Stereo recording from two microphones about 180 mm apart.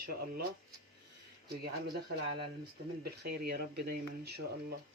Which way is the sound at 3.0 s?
60° right (ahead or behind).